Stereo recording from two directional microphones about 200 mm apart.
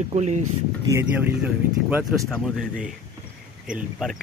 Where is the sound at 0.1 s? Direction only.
35° right (ahead or behind).